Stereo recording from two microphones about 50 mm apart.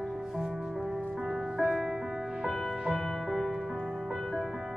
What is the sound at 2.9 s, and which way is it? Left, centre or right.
Music, centre.